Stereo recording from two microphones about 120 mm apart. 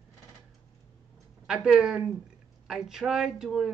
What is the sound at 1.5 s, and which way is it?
Speech, 5° right (ahead or behind).